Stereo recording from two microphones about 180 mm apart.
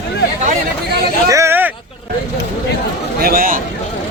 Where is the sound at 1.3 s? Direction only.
15° right (ahead or behind).